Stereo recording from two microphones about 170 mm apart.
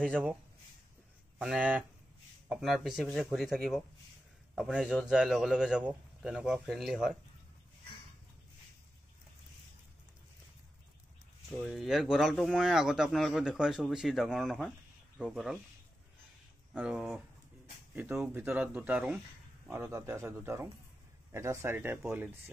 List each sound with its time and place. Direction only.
0.0 s speech: 10° right (ahead or behind)
1.4 s speech: 5° right (ahead or behind)
11.6 s speech: centre (ahead or behind)
16.7 s speech: 5° right (ahead or behind)